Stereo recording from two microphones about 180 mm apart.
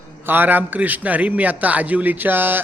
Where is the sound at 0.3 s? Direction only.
10° right (ahead or behind).